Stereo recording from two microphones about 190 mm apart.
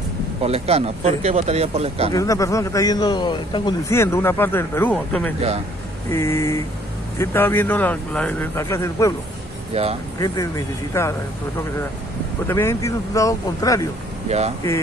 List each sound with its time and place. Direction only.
0.4 s speech: 35° right (ahead or behind)
2.1 s a man's voice: 15° left (ahead or behind)
3.9 s speech: 15° left (ahead or behind)
9.7 s speech: 30° right (ahead or behind)
10.1 s speech: 20° left (ahead or behind)
12.4 s speech: 15° left (ahead or behind)